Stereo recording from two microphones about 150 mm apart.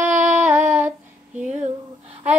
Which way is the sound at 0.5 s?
55° right (ahead or behind).